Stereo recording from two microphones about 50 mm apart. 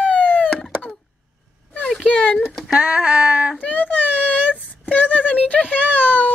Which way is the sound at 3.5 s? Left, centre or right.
Left.